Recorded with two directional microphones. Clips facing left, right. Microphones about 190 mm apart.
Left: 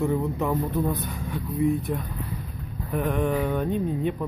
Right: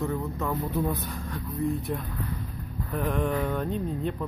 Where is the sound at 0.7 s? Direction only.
Centre (ahead or behind).